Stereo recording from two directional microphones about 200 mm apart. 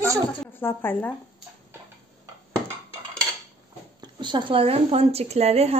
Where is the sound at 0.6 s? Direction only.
10° left (ahead or behind).